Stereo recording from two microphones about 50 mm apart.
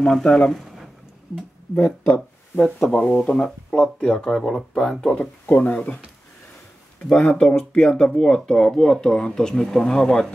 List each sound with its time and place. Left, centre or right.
0.0 s speech: centre
0.5 s a sound: centre
1.8 s speech: left
2.8 s speech: centre
5.5 s speech: left
7.0 s speech: centre